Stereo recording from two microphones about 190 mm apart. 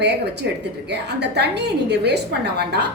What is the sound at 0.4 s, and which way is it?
A woman's voice, 65° right (ahead or behind).